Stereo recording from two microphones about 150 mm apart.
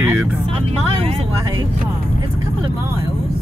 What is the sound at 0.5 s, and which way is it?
Speech, 40° right (ahead or behind).